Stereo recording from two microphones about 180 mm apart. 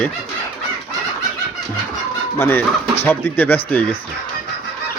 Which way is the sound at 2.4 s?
10° left (ahead or behind).